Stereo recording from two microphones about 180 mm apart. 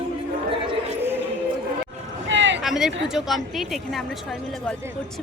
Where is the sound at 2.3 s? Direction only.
90° right.